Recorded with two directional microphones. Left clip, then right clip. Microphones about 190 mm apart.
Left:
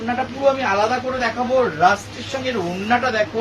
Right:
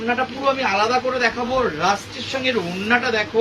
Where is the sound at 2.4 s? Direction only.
15° left (ahead or behind).